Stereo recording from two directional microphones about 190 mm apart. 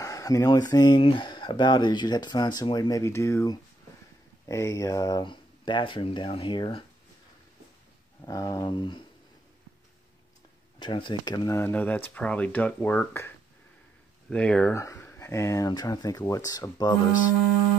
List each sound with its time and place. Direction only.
0.0 s speech: 15° left (ahead or behind)
8.3 s speech: 20° left (ahead or behind)
10.8 s speech: 25° left (ahead or behind); by 13.3 s 10° left (ahead or behind)
14.3 s speech: 5° left (ahead or behind)